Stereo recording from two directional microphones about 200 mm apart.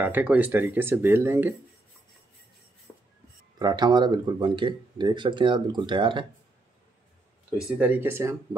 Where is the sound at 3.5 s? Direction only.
20° right (ahead or behind).